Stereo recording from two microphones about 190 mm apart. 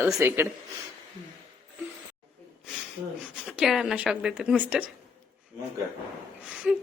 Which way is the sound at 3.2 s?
5° right (ahead or behind).